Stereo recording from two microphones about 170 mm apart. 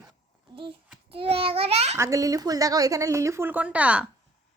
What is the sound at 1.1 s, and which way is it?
Speech, 35° right (ahead or behind).